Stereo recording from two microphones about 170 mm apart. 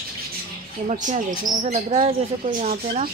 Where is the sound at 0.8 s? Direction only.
45° right (ahead or behind).